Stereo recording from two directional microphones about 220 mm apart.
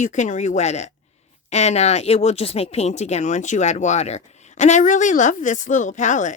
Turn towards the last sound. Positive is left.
turn(degrees=35)  # may be behind; listen again after turning